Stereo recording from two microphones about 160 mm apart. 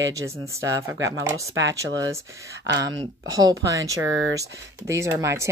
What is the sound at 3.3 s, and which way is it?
Speech, 20° right (ahead or behind).